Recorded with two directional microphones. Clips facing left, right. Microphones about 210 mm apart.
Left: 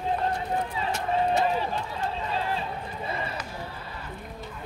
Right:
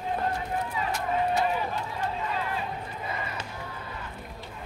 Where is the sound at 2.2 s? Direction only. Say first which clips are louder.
Left 2 dB; 30° left (ahead or behind).